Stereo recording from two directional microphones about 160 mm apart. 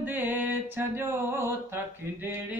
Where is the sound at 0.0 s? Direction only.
10° right (ahead or behind).